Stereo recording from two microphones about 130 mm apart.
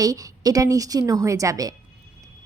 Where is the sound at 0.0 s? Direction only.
25° right (ahead or behind).